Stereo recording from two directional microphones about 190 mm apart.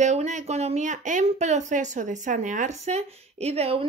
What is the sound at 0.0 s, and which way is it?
Speech, 40° right (ahead or behind).